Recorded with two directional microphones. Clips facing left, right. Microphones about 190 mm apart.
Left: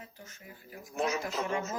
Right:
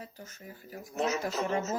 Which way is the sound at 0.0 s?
40° right (ahead or behind).